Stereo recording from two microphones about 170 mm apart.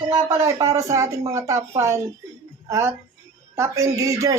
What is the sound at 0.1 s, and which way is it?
A woman's voice, 15° right (ahead or behind).